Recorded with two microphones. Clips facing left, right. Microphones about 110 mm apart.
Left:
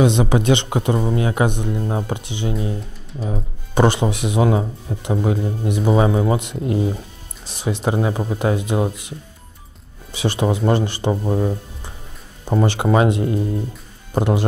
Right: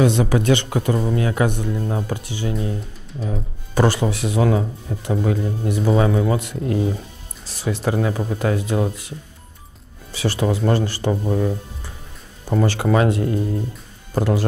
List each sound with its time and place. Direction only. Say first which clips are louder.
0.0 s speech: left 1 dB; 20° left (ahead or behind)
10.1 s speech: left 1 dB; 20° left (ahead or behind)